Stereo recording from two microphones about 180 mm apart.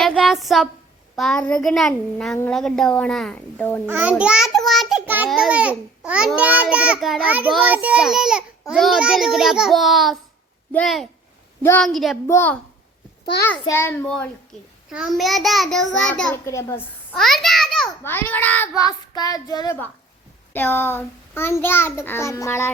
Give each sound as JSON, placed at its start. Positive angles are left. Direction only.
{"t": 0.0, "sound": "a sound", "side_deg": 0}
{"t": 1.1, "sound": "a child's voice", "side_deg": 0}
{"t": 3.8, "sound": "a child's voice", "side_deg": -10}
{"t": 11.6, "sound": "a child's voice", "side_deg": 10}
{"t": 11.9, "sound": "a child's voice", "side_deg": 0}
{"t": 12.3, "sound": "a child's voice", "side_deg": 10}
{"t": 14.8, "sound": "a child's voice", "side_deg": -5}
{"t": 16.5, "sound": "a child's voice", "side_deg": 15}
{"t": 18.0, "sound": "a child's voice", "side_deg": 10}
{"t": 18.8, "sound": "child singing", "side_deg": 20}
{"t": 20.5, "sound": "a child's voice", "side_deg": 10}